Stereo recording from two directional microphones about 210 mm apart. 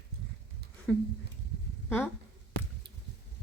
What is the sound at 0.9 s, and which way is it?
Speech, 5° left (ahead or behind).